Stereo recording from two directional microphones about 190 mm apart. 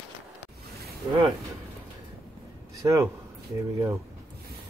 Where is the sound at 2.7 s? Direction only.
15° right (ahead or behind).